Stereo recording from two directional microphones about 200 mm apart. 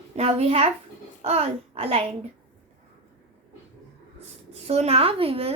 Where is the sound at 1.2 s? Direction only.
30° right (ahead or behind).